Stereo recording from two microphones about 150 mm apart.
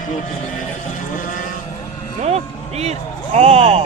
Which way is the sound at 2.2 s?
45° right (ahead or behind).